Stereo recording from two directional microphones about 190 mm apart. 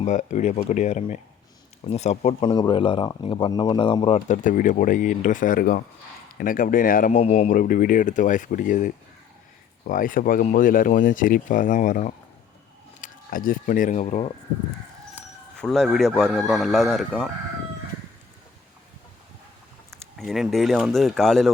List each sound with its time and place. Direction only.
0.0 s speech: 40° left (ahead or behind)
15.6 s speech: 5° left (ahead or behind)
20.1 s speech: centre (ahead or behind)